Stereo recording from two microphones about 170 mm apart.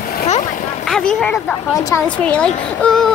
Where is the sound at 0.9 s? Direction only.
5° left (ahead or behind).